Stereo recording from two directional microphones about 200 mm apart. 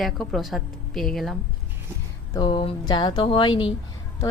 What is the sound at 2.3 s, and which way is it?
Speech, 20° left (ahead or behind).